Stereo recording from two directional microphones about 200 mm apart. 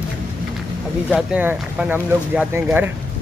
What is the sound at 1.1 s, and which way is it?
Speech, 5° right (ahead or behind).